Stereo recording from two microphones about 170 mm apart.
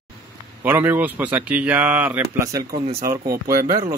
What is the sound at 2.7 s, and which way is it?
Speech, 35° right (ahead or behind).